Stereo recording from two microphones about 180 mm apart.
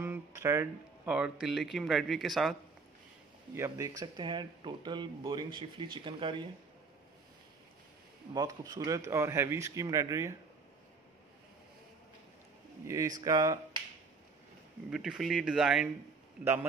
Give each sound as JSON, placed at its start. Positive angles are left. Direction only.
{"t": 0.0, "sound": "speech", "side_deg": -15}
{"t": 3.5, "sound": "speech", "side_deg": -15}
{"t": 8.3, "sound": "speech", "side_deg": -20}
{"t": 12.8, "sound": "speech", "side_deg": -20}
{"t": 14.9, "sound": "speech", "side_deg": -5}